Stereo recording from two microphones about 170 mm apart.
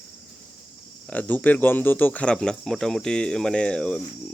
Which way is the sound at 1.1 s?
10° left (ahead or behind).